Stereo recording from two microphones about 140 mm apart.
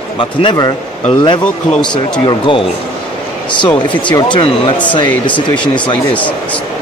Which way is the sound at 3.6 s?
35° left (ahead or behind).